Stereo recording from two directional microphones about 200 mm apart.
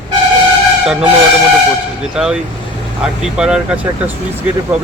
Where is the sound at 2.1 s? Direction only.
5° right (ahead or behind).